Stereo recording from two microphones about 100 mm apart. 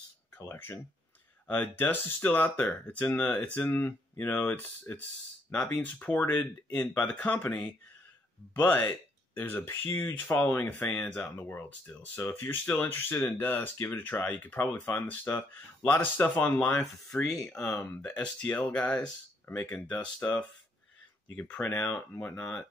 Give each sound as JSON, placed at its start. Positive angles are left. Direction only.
{"t": 0.4, "sound": "speech", "side_deg": 25}
{"t": 8.5, "sound": "speech", "side_deg": 20}
{"t": 16.8, "sound": "speech", "side_deg": 0}